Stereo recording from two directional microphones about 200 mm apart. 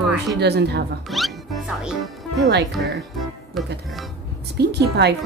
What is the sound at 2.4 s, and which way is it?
Speech, 60° right (ahead or behind).